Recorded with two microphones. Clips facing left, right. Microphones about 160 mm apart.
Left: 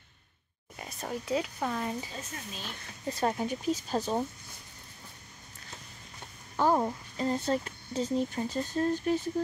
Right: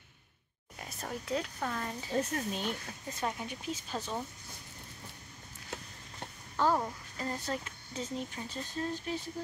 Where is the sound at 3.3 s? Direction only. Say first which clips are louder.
Left 8 dB; 40° left (ahead or behind).